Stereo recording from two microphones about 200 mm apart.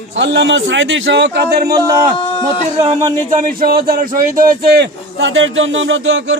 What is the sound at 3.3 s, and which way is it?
A man's voice, 45° right (ahead or behind).